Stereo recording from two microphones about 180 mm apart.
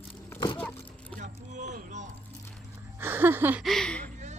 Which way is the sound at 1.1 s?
40° right (ahead or behind).